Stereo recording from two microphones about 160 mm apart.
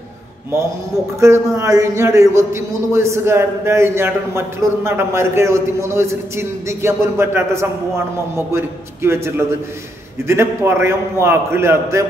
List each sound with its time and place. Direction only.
1.2 s a man's voice: 20° right (ahead or behind)